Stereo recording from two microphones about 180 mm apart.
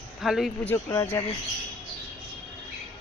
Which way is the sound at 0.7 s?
15° left (ahead or behind).